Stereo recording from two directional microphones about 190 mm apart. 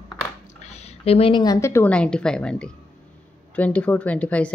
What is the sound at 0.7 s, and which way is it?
Speech, 35° left (ahead or behind).